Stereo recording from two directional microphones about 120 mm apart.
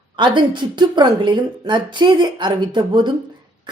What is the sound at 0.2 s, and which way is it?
A woman's voice, 40° right (ahead or behind).